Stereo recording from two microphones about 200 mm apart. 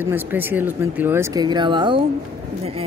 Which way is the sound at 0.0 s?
10° right (ahead or behind).